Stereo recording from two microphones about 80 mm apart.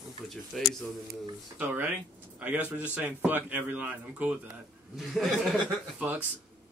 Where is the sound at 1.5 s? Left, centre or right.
Right.